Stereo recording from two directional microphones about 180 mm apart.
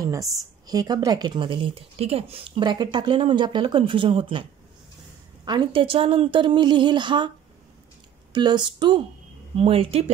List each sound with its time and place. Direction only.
0.4 s speech: 20° right (ahead or behind)
8.3 s speech: 25° right (ahead or behind)